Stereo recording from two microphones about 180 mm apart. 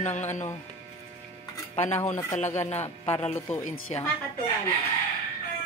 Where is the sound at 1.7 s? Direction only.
40° left (ahead or behind).